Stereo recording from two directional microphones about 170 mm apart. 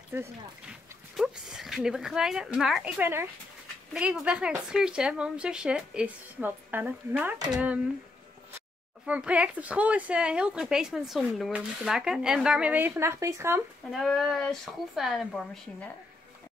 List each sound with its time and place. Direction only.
0.1 s a woman's voice: 15° right (ahead or behind)
13.9 s a woman's voice: centre (ahead or behind)